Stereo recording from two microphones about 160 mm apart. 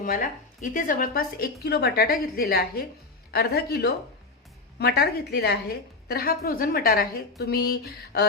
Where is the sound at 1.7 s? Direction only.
80° left.